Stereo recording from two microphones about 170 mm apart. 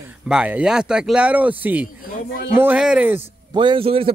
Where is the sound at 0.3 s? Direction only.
5° right (ahead or behind).